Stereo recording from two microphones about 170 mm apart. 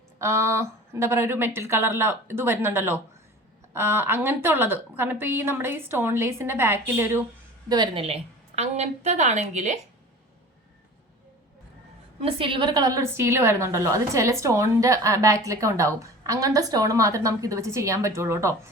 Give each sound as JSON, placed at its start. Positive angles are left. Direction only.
{"t": 0.2, "sound": "a woman's voice", "side_deg": -15}
{"t": 7.7, "sound": "a woman's voice", "side_deg": -30}
{"t": 12.2, "sound": "a woman's voice", "side_deg": -30}